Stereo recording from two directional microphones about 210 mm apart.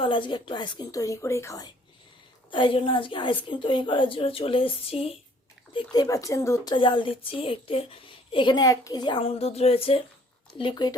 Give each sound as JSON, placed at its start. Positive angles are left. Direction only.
{"t": 0.0, "sound": "a woman's voice", "side_deg": 20}